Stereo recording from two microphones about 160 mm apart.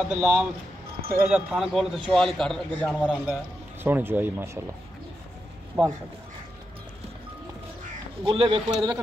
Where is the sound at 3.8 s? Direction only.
10° right (ahead or behind).